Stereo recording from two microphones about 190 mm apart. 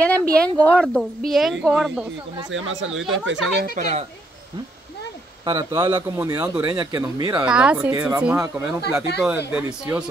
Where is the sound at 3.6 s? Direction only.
45° right (ahead or behind).